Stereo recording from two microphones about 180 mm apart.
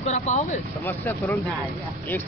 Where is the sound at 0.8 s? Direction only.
10° left (ahead or behind).